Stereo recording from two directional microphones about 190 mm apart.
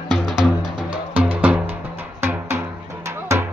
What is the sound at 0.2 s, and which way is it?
Music, 5° right (ahead or behind).